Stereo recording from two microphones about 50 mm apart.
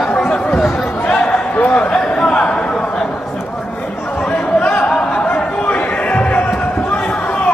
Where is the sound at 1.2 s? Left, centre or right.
Left.